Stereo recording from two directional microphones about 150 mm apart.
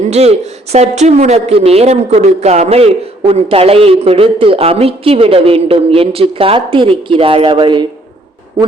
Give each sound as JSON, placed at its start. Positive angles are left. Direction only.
{"t": 0.1, "sound": "a woman's voice", "side_deg": -45}